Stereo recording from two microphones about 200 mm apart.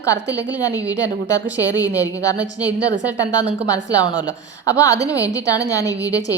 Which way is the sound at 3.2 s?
20° left (ahead or behind).